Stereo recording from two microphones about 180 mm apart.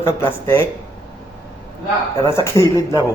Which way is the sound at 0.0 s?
15° left (ahead or behind).